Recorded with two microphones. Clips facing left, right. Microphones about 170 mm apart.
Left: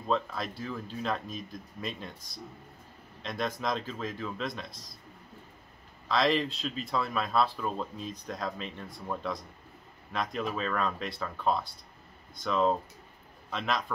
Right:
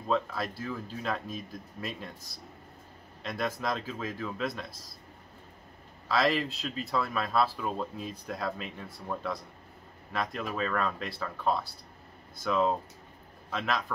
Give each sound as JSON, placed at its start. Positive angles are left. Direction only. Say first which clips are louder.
{"t": 0.1, "sound": "speech", "louder": "right 1 dB", "side_deg": -5}
{"t": 3.2, "sound": "speech", "louder": "even", "side_deg": -5}
{"t": 6.0, "sound": "speech", "louder": "even", "side_deg": -5}